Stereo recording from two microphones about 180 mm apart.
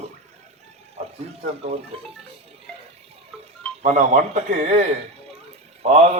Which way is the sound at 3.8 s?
40° right (ahead or behind).